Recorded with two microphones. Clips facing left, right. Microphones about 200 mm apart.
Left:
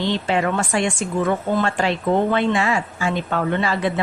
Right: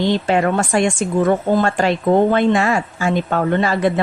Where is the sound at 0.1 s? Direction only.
45° right (ahead or behind).